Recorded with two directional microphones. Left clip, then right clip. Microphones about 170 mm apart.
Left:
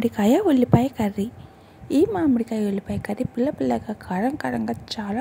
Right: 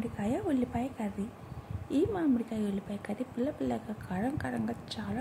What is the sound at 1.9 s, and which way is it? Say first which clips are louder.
A woman's voice: left 10 dB; 45° left (ahead or behind).